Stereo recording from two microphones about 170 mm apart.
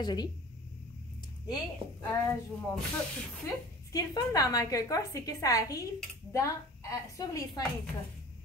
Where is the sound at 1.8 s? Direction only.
35° right (ahead or behind).